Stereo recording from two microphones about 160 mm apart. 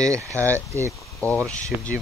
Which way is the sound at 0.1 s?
20° right (ahead or behind).